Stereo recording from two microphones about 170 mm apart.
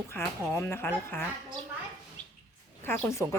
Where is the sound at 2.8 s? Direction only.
15° left (ahead or behind).